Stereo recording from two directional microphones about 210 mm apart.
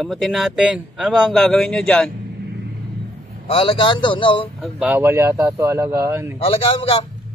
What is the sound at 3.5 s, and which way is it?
A man's voice, 25° left (ahead or behind).